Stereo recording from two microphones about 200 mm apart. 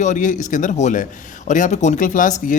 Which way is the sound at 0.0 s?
40° left (ahead or behind).